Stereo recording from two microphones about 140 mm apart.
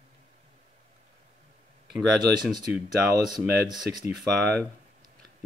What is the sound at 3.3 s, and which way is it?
Speech, 30° right (ahead or behind).